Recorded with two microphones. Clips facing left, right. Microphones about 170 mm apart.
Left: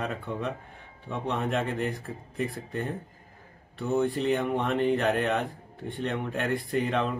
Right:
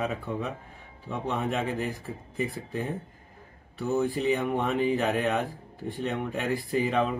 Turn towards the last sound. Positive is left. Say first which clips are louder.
# right 1 dB
turn(degrees=0)  # may be behind; listen again after turning